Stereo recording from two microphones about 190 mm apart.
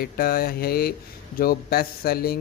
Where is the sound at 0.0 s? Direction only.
50° left (ahead or behind).